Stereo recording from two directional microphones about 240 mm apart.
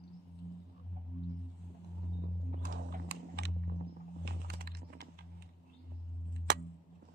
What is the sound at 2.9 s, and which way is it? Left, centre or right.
Computer keyboard, right.